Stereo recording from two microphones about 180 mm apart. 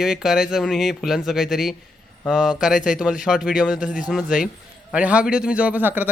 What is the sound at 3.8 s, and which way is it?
Speech, 45° left (ahead or behind).